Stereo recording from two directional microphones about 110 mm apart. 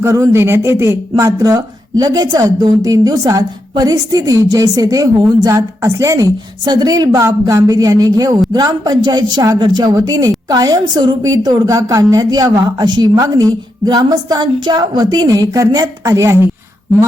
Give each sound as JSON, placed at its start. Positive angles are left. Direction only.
{"t": 0.0, "sound": "speech", "side_deg": -25}